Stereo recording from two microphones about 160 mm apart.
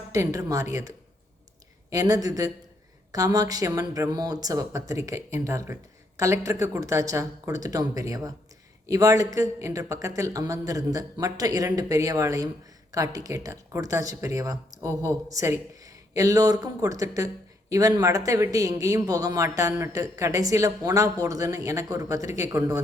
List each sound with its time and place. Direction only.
0.1 s speech: 20° right (ahead or behind)